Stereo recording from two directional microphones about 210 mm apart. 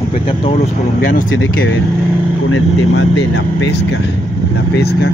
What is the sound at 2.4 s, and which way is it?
Speech, 60° left (ahead or behind).